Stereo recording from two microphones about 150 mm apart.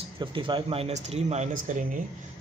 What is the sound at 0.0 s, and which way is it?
A man's voice, 35° right (ahead or behind).